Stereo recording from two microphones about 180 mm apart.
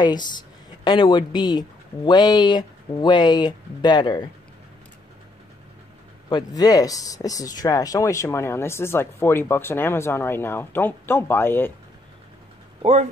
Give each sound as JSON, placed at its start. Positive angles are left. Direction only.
{"t": 0.0, "sound": "a woman's voice", "side_deg": 25}
{"t": 6.2, "sound": "speech", "side_deg": 20}